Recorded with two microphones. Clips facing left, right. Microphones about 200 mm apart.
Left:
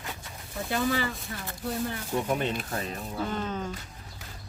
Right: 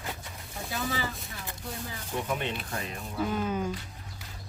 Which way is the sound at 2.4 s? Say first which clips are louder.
Left 4 dB; 35° left (ahead or behind).